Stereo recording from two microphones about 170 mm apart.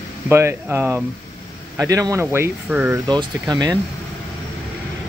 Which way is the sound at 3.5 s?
20° right (ahead or behind).